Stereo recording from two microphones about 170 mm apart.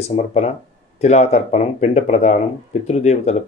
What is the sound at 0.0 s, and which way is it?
Speech, 40° left (ahead or behind).